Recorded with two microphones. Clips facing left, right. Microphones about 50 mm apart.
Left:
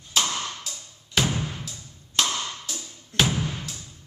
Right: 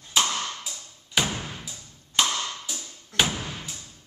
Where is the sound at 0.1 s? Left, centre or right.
Centre.